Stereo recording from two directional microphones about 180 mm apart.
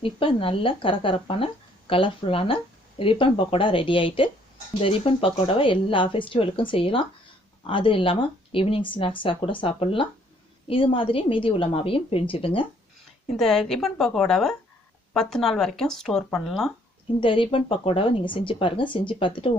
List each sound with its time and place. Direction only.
0.0 s a woman's voice: 30° left (ahead or behind)
13.3 s speech: 5° left (ahead or behind)
17.2 s speech: 30° left (ahead or behind)